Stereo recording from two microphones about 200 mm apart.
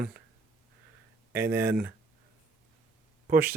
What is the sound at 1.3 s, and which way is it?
Speech, 10° right (ahead or behind).